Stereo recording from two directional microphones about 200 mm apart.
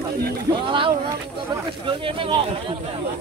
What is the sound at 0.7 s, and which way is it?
Speech, 25° right (ahead or behind).